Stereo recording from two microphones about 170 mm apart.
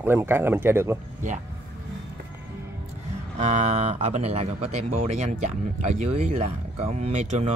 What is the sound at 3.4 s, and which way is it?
Speech, 40° right (ahead or behind).